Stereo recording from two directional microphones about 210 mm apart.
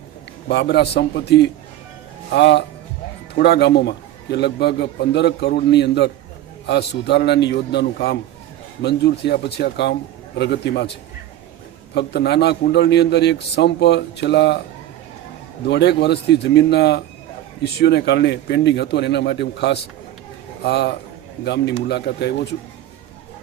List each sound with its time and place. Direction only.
0.4 s a man's voice: 55° left (ahead or behind)
11.9 s a man's voice: 50° left (ahead or behind)
15.6 s a man's voice: 55° left (ahead or behind)